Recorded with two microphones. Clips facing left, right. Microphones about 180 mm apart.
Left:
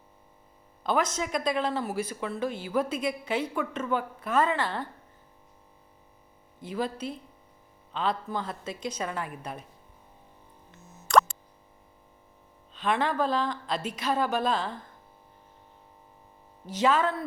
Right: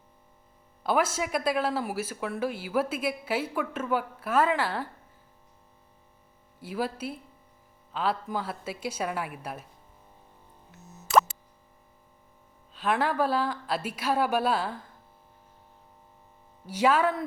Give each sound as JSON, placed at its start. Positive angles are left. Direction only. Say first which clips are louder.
{"t": 0.9, "sound": "speech", "louder": "right 1 dB", "side_deg": -10}
{"t": 6.6, "sound": "speech", "louder": "even", "side_deg": -10}
{"t": 10.7, "sound": "plop", "louder": "left 2 dB", "side_deg": -5}
{"t": 12.7, "sound": "speech", "louder": "even", "side_deg": -5}
{"t": 16.6, "sound": "speech", "louder": "right 1 dB", "side_deg": -10}